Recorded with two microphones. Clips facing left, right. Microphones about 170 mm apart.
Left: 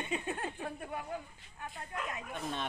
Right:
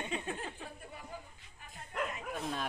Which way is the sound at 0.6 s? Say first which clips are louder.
Left 8 dB; 70° left (ahead or behind).